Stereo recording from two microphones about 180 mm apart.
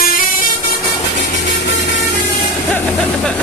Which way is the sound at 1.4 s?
70° left (ahead or behind).